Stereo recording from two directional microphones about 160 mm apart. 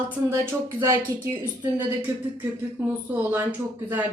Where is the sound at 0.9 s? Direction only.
20° right (ahead or behind).